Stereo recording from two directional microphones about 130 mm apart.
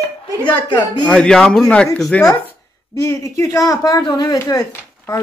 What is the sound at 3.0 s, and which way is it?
A woman's voice, 25° left (ahead or behind).